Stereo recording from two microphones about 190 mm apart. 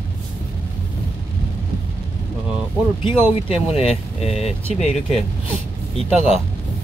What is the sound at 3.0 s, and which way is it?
Speech, 30° left (ahead or behind).